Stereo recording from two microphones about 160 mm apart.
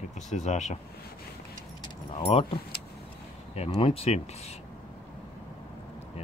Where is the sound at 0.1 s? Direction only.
45° left (ahead or behind).